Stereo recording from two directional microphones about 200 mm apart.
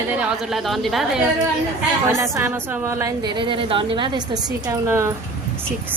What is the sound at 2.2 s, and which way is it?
Speech, 15° right (ahead or behind).